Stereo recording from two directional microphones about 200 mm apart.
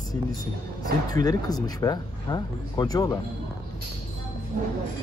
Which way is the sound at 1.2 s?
20° left (ahead or behind).